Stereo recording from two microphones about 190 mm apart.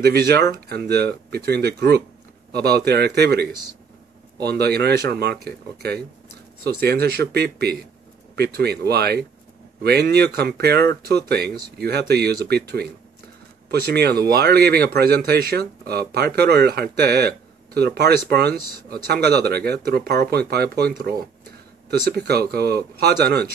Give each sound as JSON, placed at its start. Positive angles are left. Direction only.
{"t": 0.0, "sound": "speech", "side_deg": -60}